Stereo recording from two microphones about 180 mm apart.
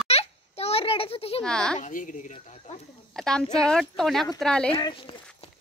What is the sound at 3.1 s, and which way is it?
Speech, 5° left (ahead or behind).